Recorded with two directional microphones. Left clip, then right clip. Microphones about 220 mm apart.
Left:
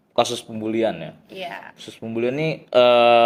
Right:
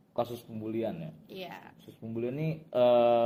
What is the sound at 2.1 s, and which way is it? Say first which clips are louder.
Speech: left 13 dB; 35° left (ahead or behind).